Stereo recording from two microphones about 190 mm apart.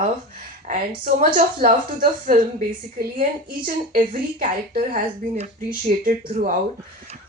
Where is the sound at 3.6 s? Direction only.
45° right (ahead or behind).